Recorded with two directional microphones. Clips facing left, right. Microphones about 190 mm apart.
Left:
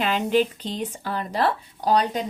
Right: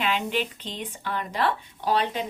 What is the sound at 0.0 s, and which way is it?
A woman's voice, 40° left (ahead or behind).